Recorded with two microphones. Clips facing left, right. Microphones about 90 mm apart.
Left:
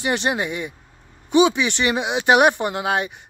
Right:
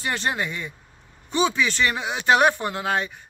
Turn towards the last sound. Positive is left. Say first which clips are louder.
# left 3 dB
turn(degrees=15)  # may be behind; listen again after turning